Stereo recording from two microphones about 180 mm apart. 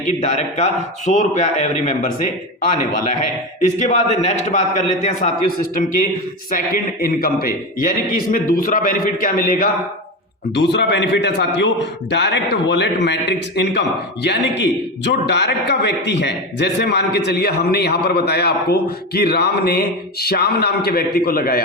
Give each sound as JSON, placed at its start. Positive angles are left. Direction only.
{"t": 0.2, "sound": "a man's voice", "side_deg": 40}
{"t": 3.8, "sound": "a man's voice", "side_deg": 40}
{"t": 10.5, "sound": "a man's voice", "side_deg": 75}